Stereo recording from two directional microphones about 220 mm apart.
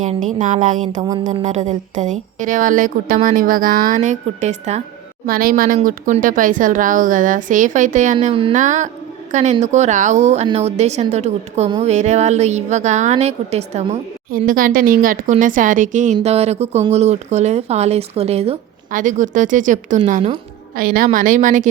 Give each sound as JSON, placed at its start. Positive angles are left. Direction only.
{"t": 0.0, "sound": "a woman's voice", "side_deg": -35}
{"t": 5.2, "sound": "a woman's voice", "side_deg": -40}